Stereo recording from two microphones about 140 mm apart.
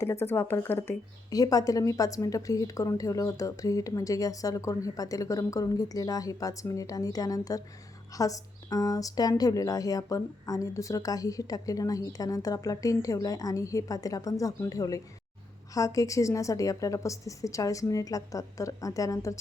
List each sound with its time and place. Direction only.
0.0 s a woman's voice: 20° left (ahead or behind)